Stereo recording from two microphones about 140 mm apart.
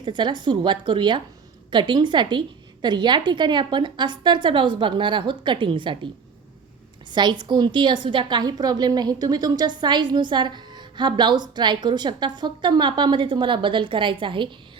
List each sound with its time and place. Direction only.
0.0 s a woman's voice: 35° right (ahead or behind)
7.1 s a woman's voice: 30° right (ahead or behind)